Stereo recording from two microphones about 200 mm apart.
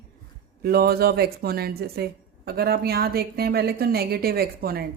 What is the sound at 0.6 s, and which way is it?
A woman's voice, 50° right (ahead or behind).